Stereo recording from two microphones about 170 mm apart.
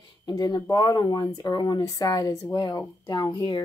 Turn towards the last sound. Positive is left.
turn(degrees=25)  # may be behind; listen again after turning